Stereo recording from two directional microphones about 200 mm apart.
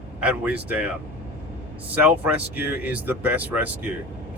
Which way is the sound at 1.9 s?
10° right (ahead or behind).